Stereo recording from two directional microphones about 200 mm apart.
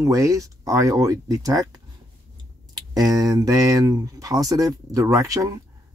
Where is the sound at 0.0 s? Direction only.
15° right (ahead or behind).